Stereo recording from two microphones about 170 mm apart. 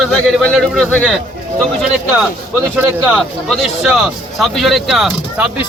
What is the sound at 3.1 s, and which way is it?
A man's voice, centre (ahead or behind).